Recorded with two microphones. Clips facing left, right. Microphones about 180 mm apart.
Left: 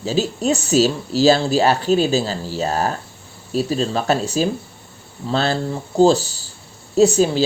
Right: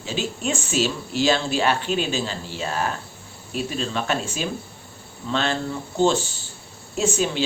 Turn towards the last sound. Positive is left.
turn(degrees=35)  # may be behind; listen again after turning